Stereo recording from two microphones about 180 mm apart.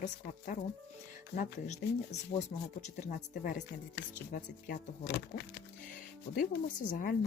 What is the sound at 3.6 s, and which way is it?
Speech, 55° left (ahead or behind).